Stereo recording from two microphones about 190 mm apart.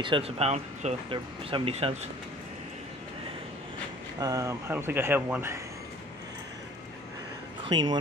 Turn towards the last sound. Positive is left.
turn(degrees=-25)  # may be behind; listen again after turning